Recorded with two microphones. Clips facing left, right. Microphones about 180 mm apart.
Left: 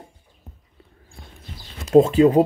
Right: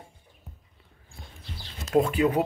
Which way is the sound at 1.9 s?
25° left (ahead or behind).